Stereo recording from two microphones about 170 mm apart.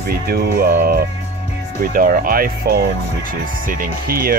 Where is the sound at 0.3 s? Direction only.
60° right (ahead or behind).